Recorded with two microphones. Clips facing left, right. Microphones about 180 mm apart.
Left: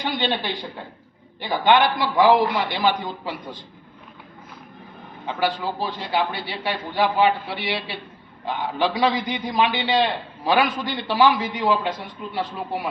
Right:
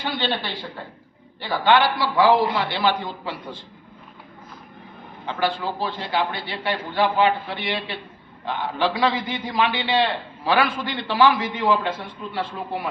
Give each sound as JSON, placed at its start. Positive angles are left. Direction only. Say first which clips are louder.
{"t": 0.0, "sound": "a man's voice", "louder": "left 1 dB", "side_deg": 15}
{"t": 5.2, "sound": "a man's voice", "louder": "even", "side_deg": 10}
{"t": 9.0, "sound": "a man's voice", "louder": "left 1 dB", "side_deg": 15}